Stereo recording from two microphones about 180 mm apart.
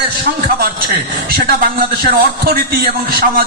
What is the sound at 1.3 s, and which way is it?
A man's voice, 60° right (ahead or behind).